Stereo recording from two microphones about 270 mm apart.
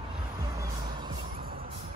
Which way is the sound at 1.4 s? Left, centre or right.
Right.